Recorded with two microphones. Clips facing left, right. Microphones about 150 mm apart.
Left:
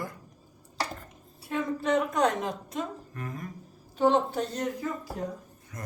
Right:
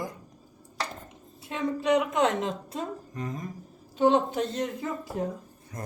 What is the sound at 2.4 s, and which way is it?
A man's voice, 25° right (ahead or behind).